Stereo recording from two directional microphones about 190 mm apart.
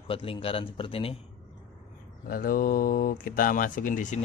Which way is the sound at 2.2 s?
50° left (ahead or behind).